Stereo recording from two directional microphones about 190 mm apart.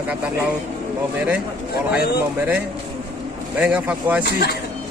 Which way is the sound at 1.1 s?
5° right (ahead or behind).